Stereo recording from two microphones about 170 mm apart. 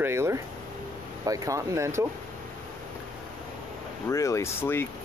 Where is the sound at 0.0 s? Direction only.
15° right (ahead or behind).